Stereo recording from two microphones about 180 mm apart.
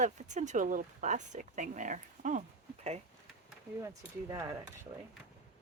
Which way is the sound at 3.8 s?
15° right (ahead or behind).